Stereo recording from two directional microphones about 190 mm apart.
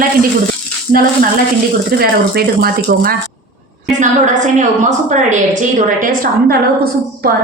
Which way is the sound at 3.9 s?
40° right (ahead or behind).